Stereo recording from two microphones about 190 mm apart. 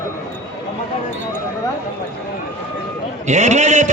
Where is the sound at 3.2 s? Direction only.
40° right (ahead or behind).